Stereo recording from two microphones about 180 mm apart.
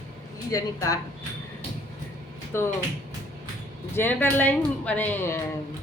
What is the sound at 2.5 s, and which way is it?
Speech, 15° left (ahead or behind).